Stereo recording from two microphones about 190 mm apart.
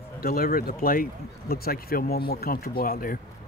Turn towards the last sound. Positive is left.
turn(degrees=50)  # may be behind; listen again after turning